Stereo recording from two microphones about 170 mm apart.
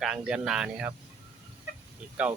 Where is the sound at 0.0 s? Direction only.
5° right (ahead or behind).